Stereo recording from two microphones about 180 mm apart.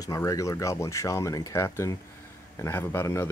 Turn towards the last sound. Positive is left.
turn(degrees=15)  # may be behind; listen again after turning